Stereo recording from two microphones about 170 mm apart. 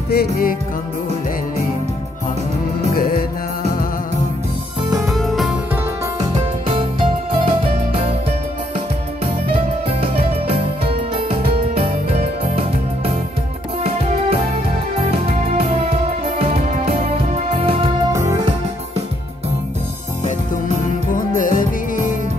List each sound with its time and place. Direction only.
0.1 s music: 60° left (ahead or behind)
3.0 s music: 60° left (ahead or behind)
5.0 s music: centre (ahead or behind)
6.1 s music: 30° right (ahead or behind)
10.5 s music: 35° right (ahead or behind)
15.0 s music: 35° right (ahead or behind)
21.1 s music: 50° left (ahead or behind)